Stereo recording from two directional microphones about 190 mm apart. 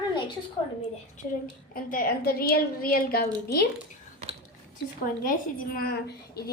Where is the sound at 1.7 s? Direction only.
50° left (ahead or behind).